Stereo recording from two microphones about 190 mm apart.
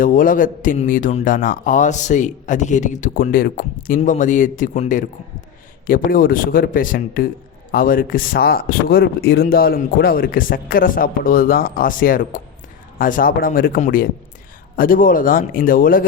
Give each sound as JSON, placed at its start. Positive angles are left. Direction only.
{"t": 0.0, "sound": "a man's voice", "side_deg": 45}